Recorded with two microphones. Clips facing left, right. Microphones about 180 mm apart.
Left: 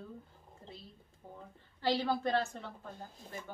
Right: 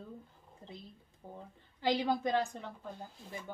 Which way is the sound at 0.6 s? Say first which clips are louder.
Right 2 dB; 20° right (ahead or behind).